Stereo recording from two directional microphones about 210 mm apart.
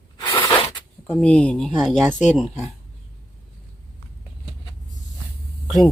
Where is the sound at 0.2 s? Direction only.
20° left (ahead or behind).